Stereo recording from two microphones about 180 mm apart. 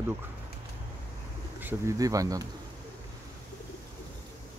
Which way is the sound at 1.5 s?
15° right (ahead or behind).